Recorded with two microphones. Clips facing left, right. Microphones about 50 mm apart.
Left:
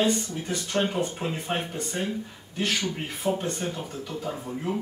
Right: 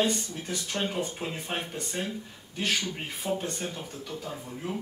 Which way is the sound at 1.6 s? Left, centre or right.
Centre.